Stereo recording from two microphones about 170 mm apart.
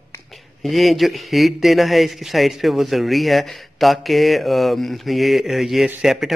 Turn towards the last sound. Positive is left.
turn(degrees=0)  # may be behind; listen again after turning